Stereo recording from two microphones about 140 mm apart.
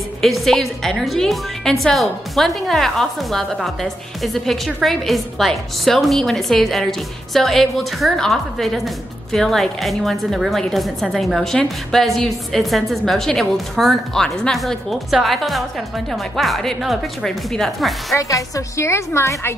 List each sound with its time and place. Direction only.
0.2 s a woman's voice: centre (ahead or behind)
18.1 s a woman's voice: 20° left (ahead or behind)